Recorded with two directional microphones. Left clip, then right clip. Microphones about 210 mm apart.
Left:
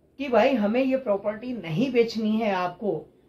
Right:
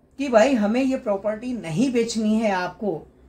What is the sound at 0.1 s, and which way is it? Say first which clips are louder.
A woman's voice: right 3 dB; 15° right (ahead or behind).